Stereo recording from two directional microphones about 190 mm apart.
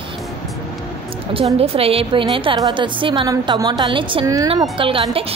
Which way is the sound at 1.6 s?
30° right (ahead or behind).